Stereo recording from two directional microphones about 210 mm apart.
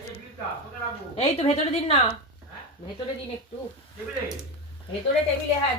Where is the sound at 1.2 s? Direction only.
30° left (ahead or behind).